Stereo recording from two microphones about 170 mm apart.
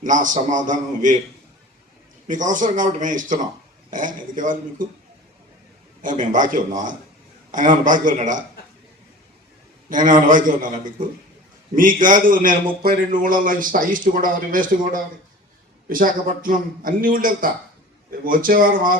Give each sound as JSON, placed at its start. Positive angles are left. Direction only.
{"t": 0.0, "sound": "a man's voice", "side_deg": -50}
{"t": 2.2, "sound": "a man's voice", "side_deg": -50}
{"t": 6.0, "sound": "a man's voice", "side_deg": -50}
{"t": 9.9, "sound": "a man's voice", "side_deg": -50}